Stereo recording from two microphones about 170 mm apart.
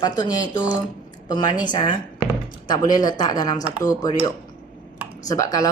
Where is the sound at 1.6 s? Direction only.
25° left (ahead or behind).